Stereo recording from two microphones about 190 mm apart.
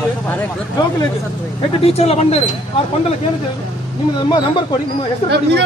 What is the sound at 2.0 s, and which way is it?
Speech, 35° left (ahead or behind).